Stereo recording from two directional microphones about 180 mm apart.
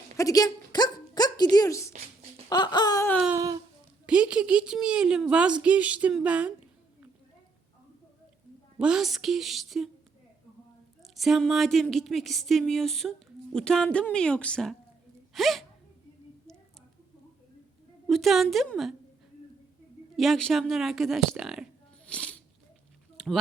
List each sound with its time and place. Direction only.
0.2 s speech: 20° left (ahead or behind)
2.5 s baby cry: 25° left (ahead or behind)
3.2 s a sound: 20° right (ahead or behind)
4.0 s speech: 5° right (ahead or behind)
8.8 s speech: 5° right (ahead or behind)
11.1 s speech: centre (ahead or behind)
18.0 s speech: centre (ahead or behind)
20.1 s a woman's voice: centre (ahead or behind)
23.1 s a sound: centre (ahead or behind)